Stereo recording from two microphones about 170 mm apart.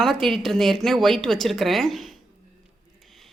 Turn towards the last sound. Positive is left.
turn(degrees=0)  # may be behind; listen again after turning